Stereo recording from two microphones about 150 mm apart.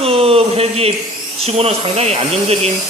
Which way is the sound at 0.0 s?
40° right (ahead or behind).